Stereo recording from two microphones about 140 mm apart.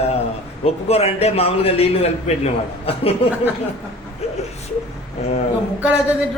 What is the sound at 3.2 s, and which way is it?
Speech, 45° left (ahead or behind).